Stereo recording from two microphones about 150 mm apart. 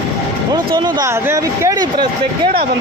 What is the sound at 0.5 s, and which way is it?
Speech, 30° right (ahead or behind).